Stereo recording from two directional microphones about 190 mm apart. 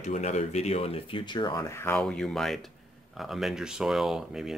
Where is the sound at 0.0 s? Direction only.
35° left (ahead or behind).